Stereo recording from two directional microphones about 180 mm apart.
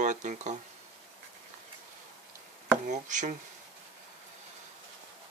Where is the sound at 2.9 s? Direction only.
45° right (ahead or behind).